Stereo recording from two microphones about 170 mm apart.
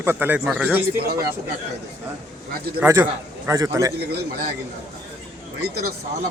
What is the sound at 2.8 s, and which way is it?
A man's voice, 15° right (ahead or behind).